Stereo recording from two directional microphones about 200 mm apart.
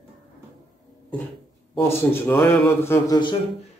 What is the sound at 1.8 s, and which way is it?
A man's voice, 10° left (ahead or behind).